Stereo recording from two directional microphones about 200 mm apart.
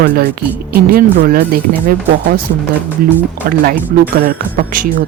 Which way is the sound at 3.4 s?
45° right (ahead or behind).